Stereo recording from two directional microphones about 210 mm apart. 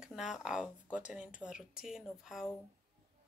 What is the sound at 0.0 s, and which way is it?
Speech, centre (ahead or behind).